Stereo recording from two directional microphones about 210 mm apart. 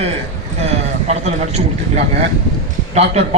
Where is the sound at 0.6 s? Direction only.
30° right (ahead or behind).